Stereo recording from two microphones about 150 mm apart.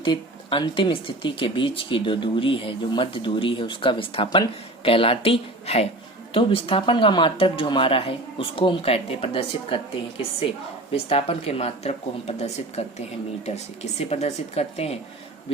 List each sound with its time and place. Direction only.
0.0 s speech: 30° left (ahead or behind)
10.9 s speech: 40° left (ahead or behind)
14.0 s speech: 45° left (ahead or behind)